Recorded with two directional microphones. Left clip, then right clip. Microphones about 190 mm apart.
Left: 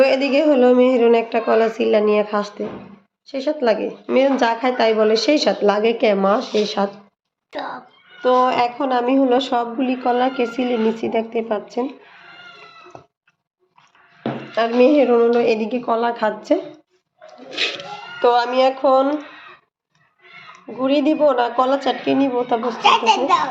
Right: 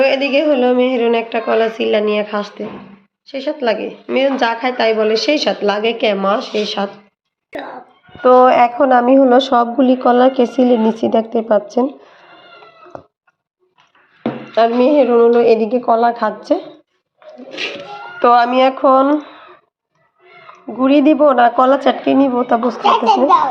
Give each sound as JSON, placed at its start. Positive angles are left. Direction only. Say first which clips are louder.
{"t": 0.0, "sound": "a woman's voice", "louder": "right 2 dB", "side_deg": 0}
{"t": 8.2, "sound": "a woman's voice", "louder": "right 7 dB", "side_deg": -20}
{"t": 14.2, "sound": "speech", "louder": "right 7 dB", "side_deg": -25}
{"t": 18.2, "sound": "a woman's voice", "louder": "right 5 dB", "side_deg": -25}
{"t": 20.7, "sound": "a woman's voice", "louder": "right 6 dB", "side_deg": -25}
{"t": 22.8, "sound": "a child's voice", "louder": "right 1 dB", "side_deg": 20}